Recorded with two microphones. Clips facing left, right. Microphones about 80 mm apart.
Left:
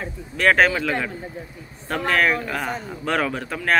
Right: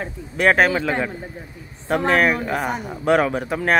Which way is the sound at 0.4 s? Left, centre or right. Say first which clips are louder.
Right 1 dB; centre.